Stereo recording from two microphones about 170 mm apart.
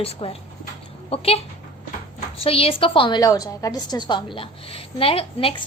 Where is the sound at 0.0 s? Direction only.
35° left (ahead or behind).